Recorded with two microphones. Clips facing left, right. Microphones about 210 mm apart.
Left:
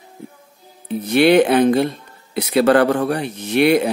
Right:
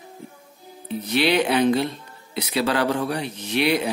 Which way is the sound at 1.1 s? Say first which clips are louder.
Left 8 dB; 50° left (ahead or behind).